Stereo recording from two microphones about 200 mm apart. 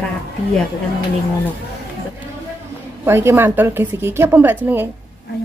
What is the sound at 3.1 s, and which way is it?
A woman's voice, 10° right (ahead or behind).